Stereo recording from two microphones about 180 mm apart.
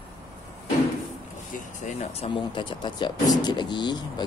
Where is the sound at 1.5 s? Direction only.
40° left (ahead or behind).